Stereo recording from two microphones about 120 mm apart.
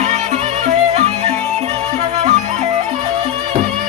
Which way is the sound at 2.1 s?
80° right.